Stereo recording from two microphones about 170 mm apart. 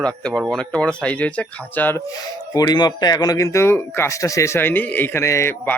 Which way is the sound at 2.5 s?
20° left (ahead or behind).